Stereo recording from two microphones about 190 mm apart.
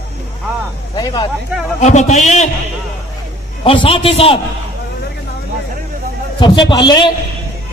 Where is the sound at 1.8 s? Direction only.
40° left (ahead or behind).